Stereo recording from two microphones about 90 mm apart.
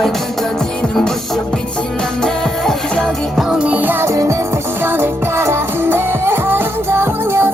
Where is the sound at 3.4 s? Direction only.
10° right (ahead or behind).